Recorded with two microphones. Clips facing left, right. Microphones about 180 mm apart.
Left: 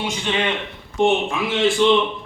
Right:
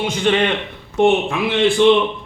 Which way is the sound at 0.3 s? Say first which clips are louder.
Right 6 dB; 60° right (ahead or behind).